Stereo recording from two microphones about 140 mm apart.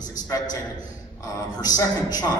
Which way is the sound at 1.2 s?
25° left (ahead or behind).